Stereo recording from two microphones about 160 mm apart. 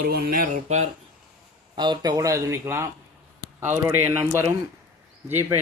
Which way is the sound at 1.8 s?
25° right (ahead or behind).